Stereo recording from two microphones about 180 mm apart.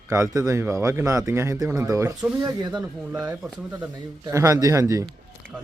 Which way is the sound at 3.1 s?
5° right (ahead or behind).